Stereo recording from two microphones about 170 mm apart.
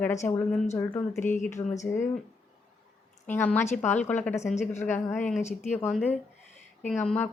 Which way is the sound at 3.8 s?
45° left (ahead or behind).